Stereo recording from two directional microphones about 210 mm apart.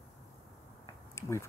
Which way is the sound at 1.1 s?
15° left (ahead or behind).